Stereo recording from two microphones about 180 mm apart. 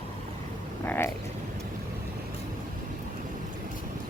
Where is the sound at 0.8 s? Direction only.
10° left (ahead or behind).